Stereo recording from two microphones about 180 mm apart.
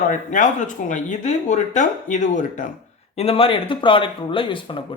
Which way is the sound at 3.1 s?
30° left (ahead or behind).